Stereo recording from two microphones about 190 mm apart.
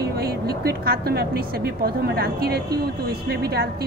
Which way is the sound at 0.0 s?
55° right (ahead or behind).